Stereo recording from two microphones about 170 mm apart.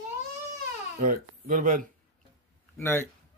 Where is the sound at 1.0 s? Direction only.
50° right (ahead or behind).